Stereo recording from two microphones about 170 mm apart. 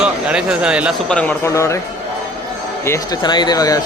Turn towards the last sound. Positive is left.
turn(degrees=20)  # may be behind; listen again after turning